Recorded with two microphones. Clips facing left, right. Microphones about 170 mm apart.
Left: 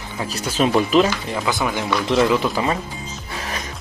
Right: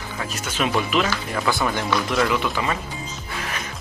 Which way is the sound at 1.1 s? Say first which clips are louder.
Left 1 dB; 15° left (ahead or behind).